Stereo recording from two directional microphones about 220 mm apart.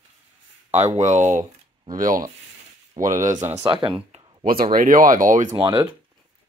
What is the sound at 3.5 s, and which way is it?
Speech, 25° right (ahead or behind).